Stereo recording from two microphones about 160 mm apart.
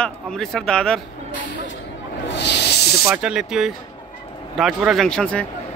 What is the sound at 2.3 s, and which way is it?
Snake, 90° left.